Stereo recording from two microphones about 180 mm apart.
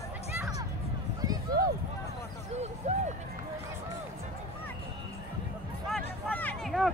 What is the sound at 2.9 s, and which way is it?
Speech, 40° right (ahead or behind).